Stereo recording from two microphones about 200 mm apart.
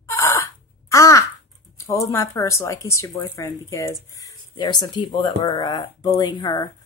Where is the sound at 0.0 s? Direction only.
15° left (ahead or behind).